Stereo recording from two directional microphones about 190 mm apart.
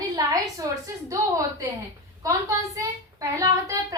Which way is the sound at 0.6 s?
20° right (ahead or behind).